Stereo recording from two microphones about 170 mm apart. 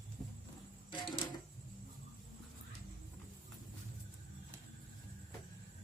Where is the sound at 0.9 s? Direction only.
30° left (ahead or behind).